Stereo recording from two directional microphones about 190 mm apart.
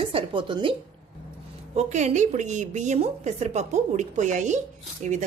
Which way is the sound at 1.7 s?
35° right (ahead or behind).